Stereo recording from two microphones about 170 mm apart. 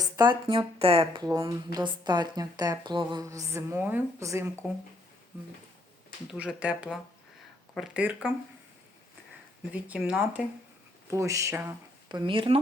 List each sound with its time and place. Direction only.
0.0 s speech: 25° right (ahead or behind)
1.3 s speech: 20° right (ahead or behind)
6.6 s speech: 5° right (ahead or behind)
9.7 s speech: 10° right (ahead or behind)
11.1 s speech: 20° right (ahead or behind)